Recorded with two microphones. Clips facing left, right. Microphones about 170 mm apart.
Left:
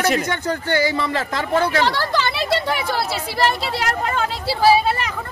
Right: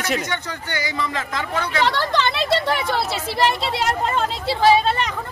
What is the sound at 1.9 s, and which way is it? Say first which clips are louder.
Speech: even; 5° left (ahead or behind).